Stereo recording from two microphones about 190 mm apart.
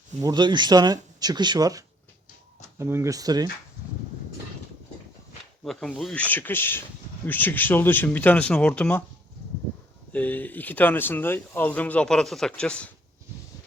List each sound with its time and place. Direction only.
0.2 s speech: 20° right (ahead or behind)
5.6 s speech: centre (ahead or behind)
10.1 s speech: 10° left (ahead or behind)